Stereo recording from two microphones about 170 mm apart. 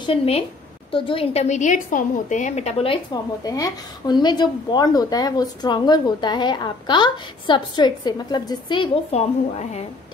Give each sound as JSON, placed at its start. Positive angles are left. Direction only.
{"t": 0.0, "sound": "a woman's voice", "side_deg": 35}